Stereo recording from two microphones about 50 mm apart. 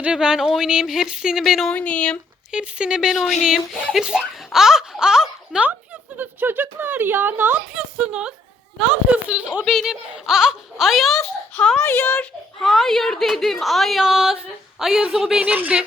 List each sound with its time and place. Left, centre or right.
0.0 s speech: centre
1.7 s speech: left
2.5 s speech: centre
4.5 s a sound: centre
6.1 s speech: right
8.9 s speech: centre
9.6 s a woman's voice: centre
11.8 s a child's voice: left
12.6 s a woman's voice: centre
14.0 s speech: centre
15.4 s a woman's voice: right